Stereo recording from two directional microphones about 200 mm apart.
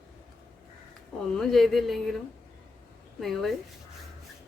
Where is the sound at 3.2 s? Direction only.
Centre (ahead or behind).